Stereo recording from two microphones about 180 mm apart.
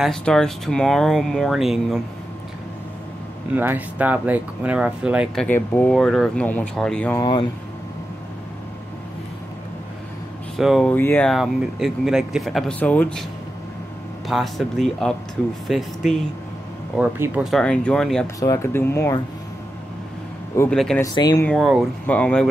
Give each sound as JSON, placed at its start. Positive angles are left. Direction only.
{"t": 0.0, "sound": "speech", "side_deg": 5}
{"t": 3.5, "sound": "speech", "side_deg": -10}
{"t": 7.2, "sound": "speech", "side_deg": 25}
{"t": 10.5, "sound": "speech", "side_deg": 0}
{"t": 14.2, "sound": "speech", "side_deg": 0}
{"t": 17.4, "sound": "speech", "side_deg": 0}
{"t": 18.2, "sound": "speech", "side_deg": 15}
{"t": 20.7, "sound": "speech", "side_deg": 5}
{"t": 21.0, "sound": "speech", "side_deg": 20}
{"t": 21.5, "sound": "speech", "side_deg": 0}